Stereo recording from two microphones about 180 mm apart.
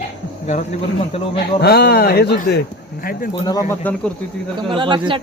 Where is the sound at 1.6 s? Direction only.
60° left (ahead or behind).